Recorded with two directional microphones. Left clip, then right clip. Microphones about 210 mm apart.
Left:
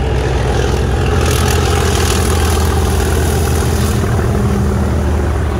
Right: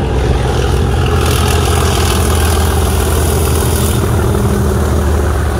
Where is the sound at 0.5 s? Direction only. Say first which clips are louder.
Right 1 dB; 20° left (ahead or behind); by 4.2 s 20° right (ahead or behind).